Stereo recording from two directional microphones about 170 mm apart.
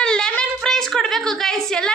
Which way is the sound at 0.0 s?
5° left (ahead or behind).